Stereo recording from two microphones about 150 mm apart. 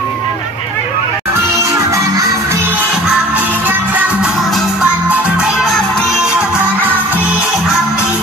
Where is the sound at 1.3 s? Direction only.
20° right (ahead or behind).